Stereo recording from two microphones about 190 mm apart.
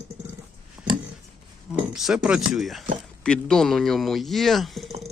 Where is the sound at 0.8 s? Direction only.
5° right (ahead or behind).